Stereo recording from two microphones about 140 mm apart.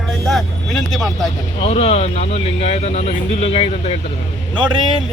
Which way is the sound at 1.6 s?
45° left (ahead or behind).